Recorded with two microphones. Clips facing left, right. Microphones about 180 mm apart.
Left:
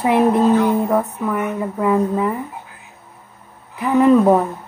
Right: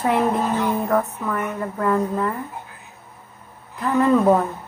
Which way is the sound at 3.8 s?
15° left (ahead or behind).